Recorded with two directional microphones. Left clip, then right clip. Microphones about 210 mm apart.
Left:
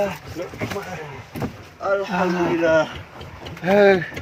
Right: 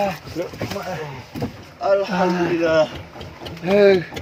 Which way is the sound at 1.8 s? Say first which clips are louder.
Right 4 dB; 10° right (ahead or behind).